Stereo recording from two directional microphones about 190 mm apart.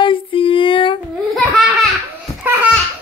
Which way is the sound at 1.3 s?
Centre (ahead or behind).